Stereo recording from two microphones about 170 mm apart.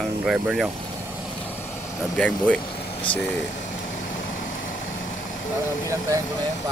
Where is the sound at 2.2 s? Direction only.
5° left (ahead or behind).